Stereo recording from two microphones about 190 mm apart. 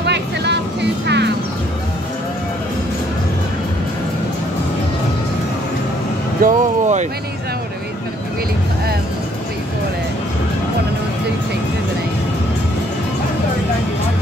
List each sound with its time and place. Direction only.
0.0 s vehicle: 60° right (ahead or behind)
6.4 s vehicle: 40° right (ahead or behind)